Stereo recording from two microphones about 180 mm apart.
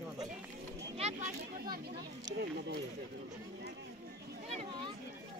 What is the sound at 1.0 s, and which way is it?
Speech, 35° right (ahead or behind).